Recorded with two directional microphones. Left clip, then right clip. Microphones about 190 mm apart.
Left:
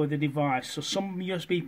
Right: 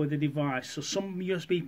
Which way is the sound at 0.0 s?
20° left (ahead or behind).